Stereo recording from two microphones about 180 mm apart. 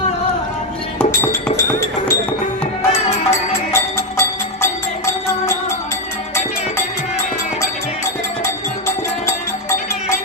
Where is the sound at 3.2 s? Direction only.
15° left (ahead or behind).